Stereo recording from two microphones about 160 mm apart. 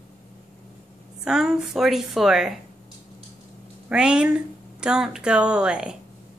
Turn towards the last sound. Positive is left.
turn(degrees=-5)  # may be behind; listen again after turning